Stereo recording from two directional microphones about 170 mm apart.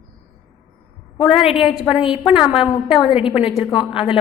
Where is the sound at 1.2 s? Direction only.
Centre (ahead or behind).